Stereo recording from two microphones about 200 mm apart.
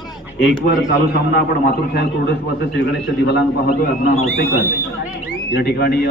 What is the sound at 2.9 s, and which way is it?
Speech, 60° left (ahead or behind).